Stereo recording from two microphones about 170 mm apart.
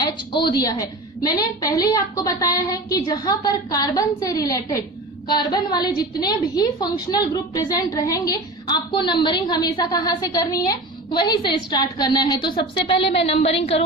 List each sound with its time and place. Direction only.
0.0 s a woman's voice: 25° left (ahead or behind)